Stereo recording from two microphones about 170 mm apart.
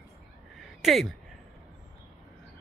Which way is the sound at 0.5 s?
Centre (ahead or behind).